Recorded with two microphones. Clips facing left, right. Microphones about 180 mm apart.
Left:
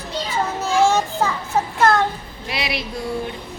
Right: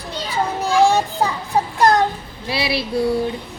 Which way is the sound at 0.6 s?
15° right (ahead or behind).